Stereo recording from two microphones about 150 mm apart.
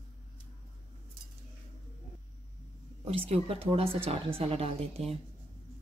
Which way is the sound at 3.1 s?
40° right (ahead or behind).